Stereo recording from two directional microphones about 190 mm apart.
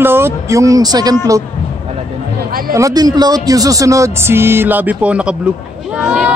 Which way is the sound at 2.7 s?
15° right (ahead or behind).